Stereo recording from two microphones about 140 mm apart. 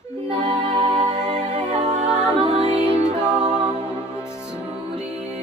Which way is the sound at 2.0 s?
5° right (ahead or behind).